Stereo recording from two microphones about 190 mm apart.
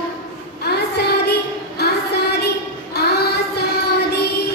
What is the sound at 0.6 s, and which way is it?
Child singing, 60° left (ahead or behind).